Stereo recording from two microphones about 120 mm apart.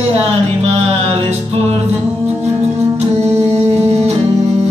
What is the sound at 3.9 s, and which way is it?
Music, 65° right (ahead or behind).